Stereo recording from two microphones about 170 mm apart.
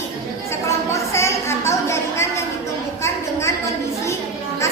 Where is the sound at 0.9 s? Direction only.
15° left (ahead or behind).